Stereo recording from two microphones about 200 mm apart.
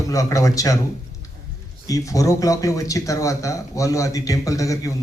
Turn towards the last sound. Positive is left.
turn(degrees=15)  # may be behind; listen again after turning